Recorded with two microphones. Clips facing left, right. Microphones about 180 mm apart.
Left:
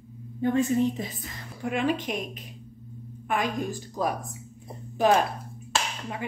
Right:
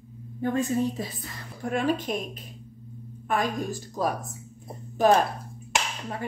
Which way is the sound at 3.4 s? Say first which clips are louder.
Even; 15° left (ahead or behind).